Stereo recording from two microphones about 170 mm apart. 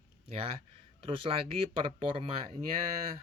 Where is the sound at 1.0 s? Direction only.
30° right (ahead or behind).